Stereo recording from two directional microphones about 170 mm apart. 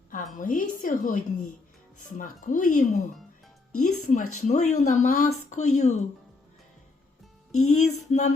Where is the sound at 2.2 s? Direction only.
50° left (ahead or behind).